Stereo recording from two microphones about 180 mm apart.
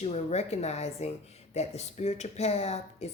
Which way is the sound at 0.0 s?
35° left (ahead or behind).